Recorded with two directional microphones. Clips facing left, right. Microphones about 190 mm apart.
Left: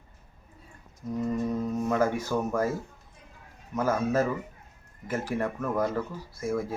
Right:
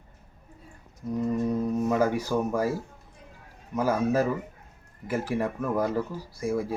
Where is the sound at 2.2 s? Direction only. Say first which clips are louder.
Right 1 dB; 10° right (ahead or behind).